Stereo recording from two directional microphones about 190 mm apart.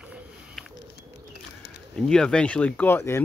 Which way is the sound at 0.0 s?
Centre (ahead or behind).